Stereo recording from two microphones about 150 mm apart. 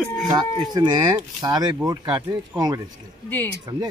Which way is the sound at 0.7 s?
30° right (ahead or behind).